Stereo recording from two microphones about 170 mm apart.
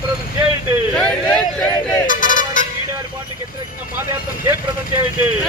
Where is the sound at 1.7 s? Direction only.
20° left (ahead or behind).